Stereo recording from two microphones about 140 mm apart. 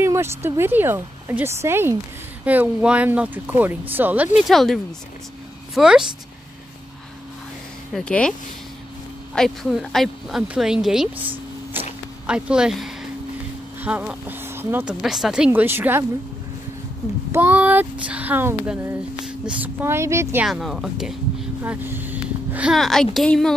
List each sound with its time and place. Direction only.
0.0 s speech: 20° right (ahead or behind)
4.4 s speech: centre (ahead or behind)
5.8 s speech: 5° right (ahead or behind)
7.9 s speech: 5° left (ahead or behind)
12.3 s speech: 5° right (ahead or behind)
17.3 s speech: 15° right (ahead or behind)
20.4 s speech: centre (ahead or behind)
21.6 s a sound: 15° right (ahead or behind)
22.8 s speech: 5° left (ahead or behind)